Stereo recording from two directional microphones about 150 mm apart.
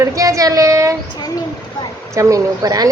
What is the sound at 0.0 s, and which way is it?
Speech, 20° right (ahead or behind).